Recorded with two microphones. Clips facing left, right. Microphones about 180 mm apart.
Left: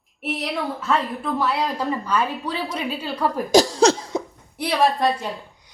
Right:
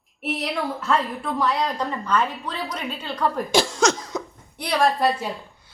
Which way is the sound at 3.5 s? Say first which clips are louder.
Left 7 dB; 40° left (ahead or behind).